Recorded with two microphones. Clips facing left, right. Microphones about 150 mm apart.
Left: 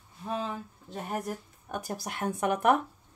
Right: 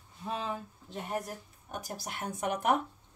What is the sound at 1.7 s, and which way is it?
Speech, 55° left (ahead or behind).